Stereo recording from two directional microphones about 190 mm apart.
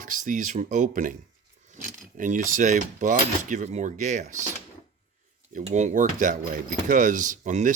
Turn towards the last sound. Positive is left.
turn(degrees=-40)  # may be behind; listen again after turning